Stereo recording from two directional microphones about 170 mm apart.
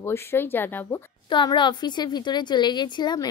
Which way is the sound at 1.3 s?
25° left (ahead or behind).